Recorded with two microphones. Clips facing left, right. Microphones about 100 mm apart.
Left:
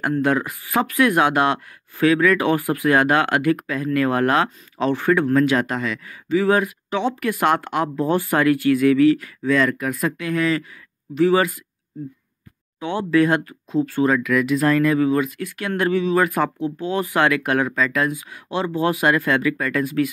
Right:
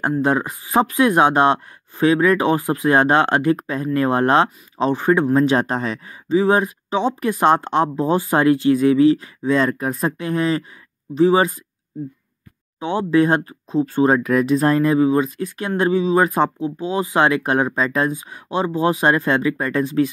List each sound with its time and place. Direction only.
0.2 s speech: 20° right (ahead or behind)
12.7 s speech: 20° right (ahead or behind)
18.5 s speech: 20° right (ahead or behind)